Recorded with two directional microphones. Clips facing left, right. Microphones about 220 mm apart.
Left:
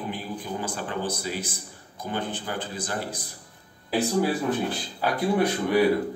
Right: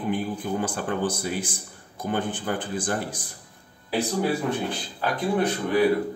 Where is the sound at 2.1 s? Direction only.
50° right (ahead or behind).